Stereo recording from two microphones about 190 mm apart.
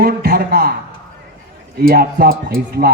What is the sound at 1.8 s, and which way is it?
A man's voice, 50° right (ahead or behind).